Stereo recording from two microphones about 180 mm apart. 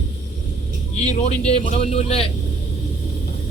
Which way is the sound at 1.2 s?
35° left (ahead or behind).